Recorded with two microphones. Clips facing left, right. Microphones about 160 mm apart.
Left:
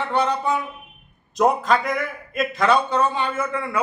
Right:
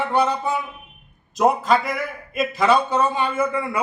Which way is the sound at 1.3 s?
5° right (ahead or behind).